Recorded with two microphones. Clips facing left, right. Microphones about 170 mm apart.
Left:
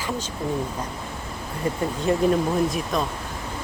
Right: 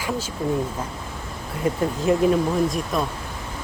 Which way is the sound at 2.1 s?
Centre (ahead or behind).